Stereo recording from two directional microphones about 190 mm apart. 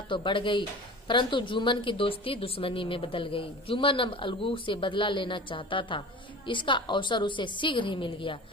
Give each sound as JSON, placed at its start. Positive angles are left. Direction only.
{"t": 0.1, "sound": "a woman's voice", "side_deg": 25}